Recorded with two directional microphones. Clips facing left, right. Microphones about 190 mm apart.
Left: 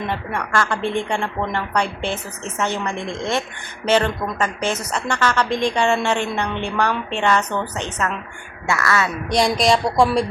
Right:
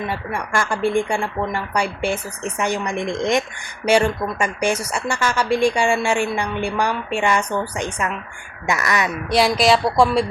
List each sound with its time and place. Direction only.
0.1 s a woman's voice: 10° right (ahead or behind)
9.3 s speech: centre (ahead or behind)